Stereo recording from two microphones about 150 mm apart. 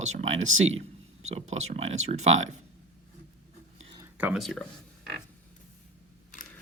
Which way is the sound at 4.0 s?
10° right (ahead or behind).